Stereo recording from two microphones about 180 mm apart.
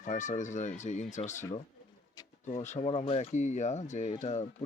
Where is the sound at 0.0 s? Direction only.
45° left (ahead or behind).